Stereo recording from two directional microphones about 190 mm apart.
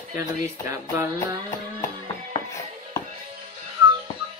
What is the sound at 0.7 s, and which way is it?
Speech, 15° right (ahead or behind).